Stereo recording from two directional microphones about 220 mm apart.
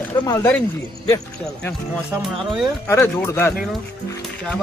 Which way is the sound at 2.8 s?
10° left (ahead or behind).